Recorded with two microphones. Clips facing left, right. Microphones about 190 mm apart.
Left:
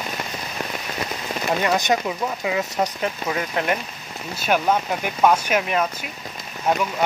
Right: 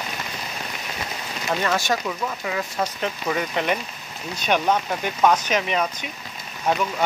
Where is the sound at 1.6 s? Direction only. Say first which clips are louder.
Left 2 dB; 20° left (ahead or behind).